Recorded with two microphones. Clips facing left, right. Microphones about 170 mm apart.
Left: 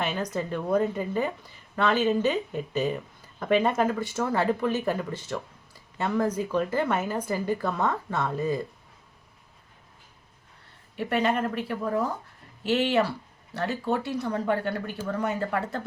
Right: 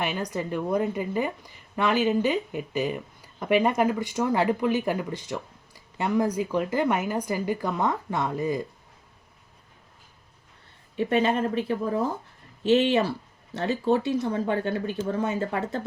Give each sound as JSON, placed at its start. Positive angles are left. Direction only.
{"t": 0.0, "sound": "speech", "side_deg": -10}
{"t": 10.9, "sound": "speech", "side_deg": -20}